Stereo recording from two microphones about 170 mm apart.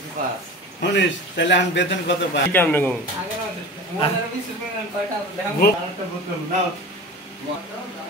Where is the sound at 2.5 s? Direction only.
10° left (ahead or behind).